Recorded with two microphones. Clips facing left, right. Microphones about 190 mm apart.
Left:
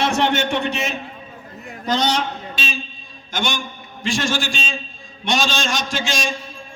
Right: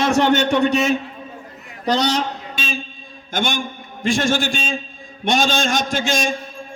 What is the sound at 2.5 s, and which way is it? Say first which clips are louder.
A man's voice: right 2 dB; 50° right (ahead or behind).